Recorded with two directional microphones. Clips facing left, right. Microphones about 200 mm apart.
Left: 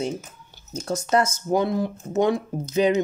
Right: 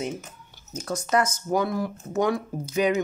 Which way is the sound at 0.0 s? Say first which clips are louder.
Left 3 dB; 30° left (ahead or behind).